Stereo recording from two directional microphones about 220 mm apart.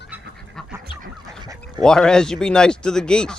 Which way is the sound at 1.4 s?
20° right (ahead or behind).